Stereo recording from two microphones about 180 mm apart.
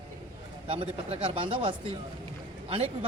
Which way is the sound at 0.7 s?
30° right (ahead or behind).